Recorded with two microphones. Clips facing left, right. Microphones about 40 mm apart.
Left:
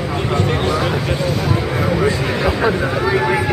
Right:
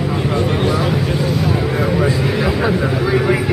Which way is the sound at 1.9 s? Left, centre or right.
Centre.